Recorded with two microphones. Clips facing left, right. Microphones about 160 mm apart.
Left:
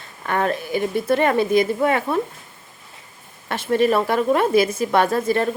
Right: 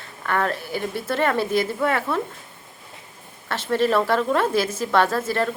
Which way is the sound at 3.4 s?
15° left (ahead or behind).